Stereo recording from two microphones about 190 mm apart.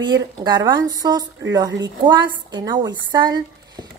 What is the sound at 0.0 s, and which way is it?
A woman's voice, 20° right (ahead or behind).